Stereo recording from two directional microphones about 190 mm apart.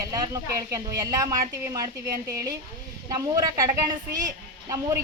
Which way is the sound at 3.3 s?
20° right (ahead or behind).